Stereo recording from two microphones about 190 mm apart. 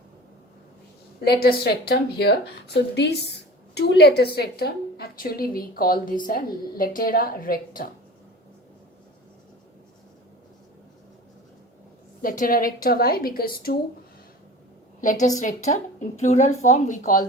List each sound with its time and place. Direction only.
1.2 s speech: 55° left (ahead or behind)
12.2 s a woman's voice: 45° left (ahead or behind)
15.0 s a woman's voice: 40° left (ahead or behind)